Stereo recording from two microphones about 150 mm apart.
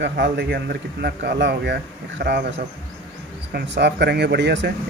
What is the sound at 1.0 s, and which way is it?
Speech, 90° right.